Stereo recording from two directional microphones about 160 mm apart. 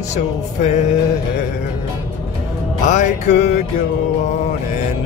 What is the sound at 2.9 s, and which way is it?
Speech, 50° left (ahead or behind).